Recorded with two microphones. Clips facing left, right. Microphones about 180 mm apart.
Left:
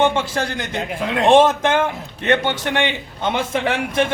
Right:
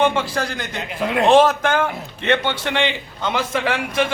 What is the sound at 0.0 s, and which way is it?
A man's voice, 25° left (ahead or behind).